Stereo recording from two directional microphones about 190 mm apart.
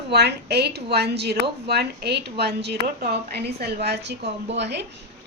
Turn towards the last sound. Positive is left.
turn(degrees=-65)  # may be behind; listen again after turning